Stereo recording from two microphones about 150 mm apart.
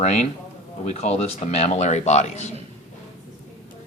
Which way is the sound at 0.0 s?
50° left (ahead or behind).